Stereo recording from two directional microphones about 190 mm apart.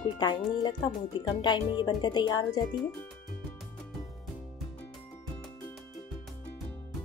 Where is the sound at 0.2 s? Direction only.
20° left (ahead or behind).